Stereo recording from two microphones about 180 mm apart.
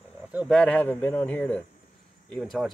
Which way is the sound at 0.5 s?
10° left (ahead or behind).